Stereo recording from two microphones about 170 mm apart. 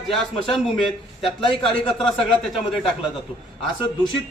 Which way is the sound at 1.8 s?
30° left (ahead or behind).